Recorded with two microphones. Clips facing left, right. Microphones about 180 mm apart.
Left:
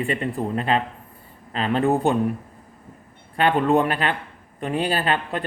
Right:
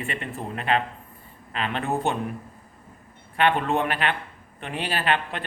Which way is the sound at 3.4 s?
35° left (ahead or behind).